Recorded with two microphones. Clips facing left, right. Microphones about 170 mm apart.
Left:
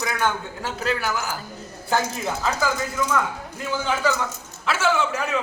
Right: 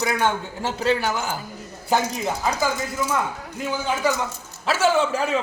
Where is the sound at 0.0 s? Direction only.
25° right (ahead or behind).